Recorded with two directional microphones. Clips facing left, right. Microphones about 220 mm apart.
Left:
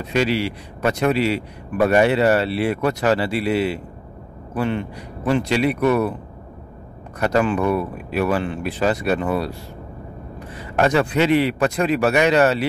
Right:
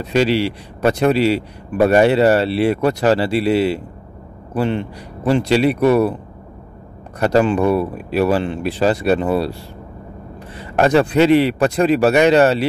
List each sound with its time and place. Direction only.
0.1 s speech: 30° right (ahead or behind)
7.2 s speech: 30° right (ahead or behind)
10.8 s speech: 35° right (ahead or behind)